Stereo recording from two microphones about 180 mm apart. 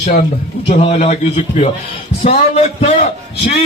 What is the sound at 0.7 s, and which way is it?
A man's voice, 35° left (ahead or behind).